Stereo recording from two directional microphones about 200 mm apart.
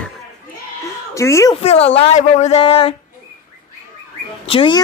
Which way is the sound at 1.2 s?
15° left (ahead or behind).